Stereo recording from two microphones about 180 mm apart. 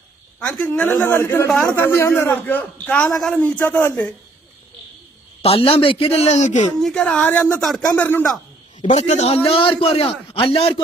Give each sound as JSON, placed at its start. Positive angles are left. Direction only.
{"t": 0.6, "sound": "a man's voice", "side_deg": 10}
{"t": 5.4, "sound": "speech", "side_deg": 30}
{"t": 6.7, "sound": "a man's voice", "side_deg": 5}
{"t": 8.9, "sound": "speech", "side_deg": 40}